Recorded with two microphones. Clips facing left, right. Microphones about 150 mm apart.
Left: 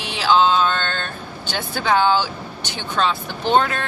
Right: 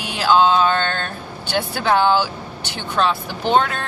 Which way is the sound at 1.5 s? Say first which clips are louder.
Right 2 dB; 5° right (ahead or behind).